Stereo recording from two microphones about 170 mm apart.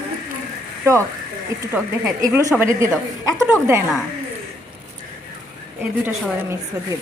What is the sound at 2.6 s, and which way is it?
A woman's voice, 15° right (ahead or behind).